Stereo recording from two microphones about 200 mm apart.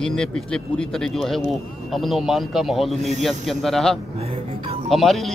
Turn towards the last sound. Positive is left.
turn(degrees=0)  # may be behind; listen again after turning